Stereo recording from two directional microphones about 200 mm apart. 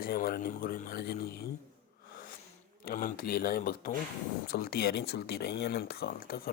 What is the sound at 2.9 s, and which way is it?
Speech, 45° left (ahead or behind).